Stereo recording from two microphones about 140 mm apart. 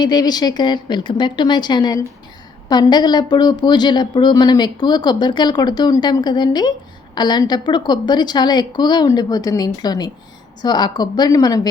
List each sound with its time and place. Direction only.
0.0 s a woman's voice: 30° left (ahead or behind)